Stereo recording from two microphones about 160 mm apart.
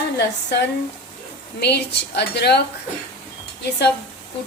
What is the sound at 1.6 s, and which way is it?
A woman's voice, 90° left.